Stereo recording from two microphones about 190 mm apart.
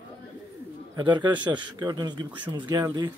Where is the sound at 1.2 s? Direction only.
25° right (ahead or behind).